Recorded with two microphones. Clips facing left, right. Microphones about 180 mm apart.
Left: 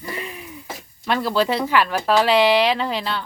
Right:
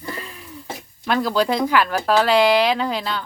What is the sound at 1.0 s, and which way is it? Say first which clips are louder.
Speech: right 1 dB; centre (ahead or behind).